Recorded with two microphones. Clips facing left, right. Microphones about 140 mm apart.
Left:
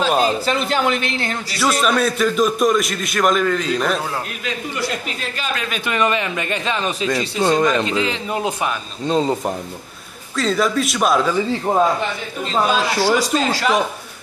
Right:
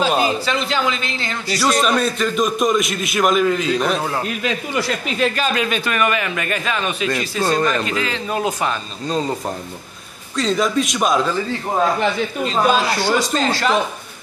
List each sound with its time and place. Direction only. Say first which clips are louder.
0.0 s speech: left 1 dB; 5° right (ahead or behind)
0.5 s speech: left 2 dB; 50° left (ahead or behind)
1.7 s a man's voice: even; 5° left (ahead or behind)
4.7 s speech: right 4 dB; 85° right
5.9 s a man's voice: even; 25° left (ahead or behind)
7.1 s a man's voice: left 3 dB; 15° left (ahead or behind)
10.3 s a man's voice: even; centre (ahead or behind)
12.4 s speech: even; centre (ahead or behind)